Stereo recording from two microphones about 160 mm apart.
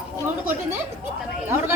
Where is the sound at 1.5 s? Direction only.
15° right (ahead or behind).